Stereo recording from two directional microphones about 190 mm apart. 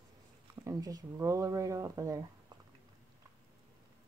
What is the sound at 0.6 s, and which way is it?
Speech, 20° right (ahead or behind).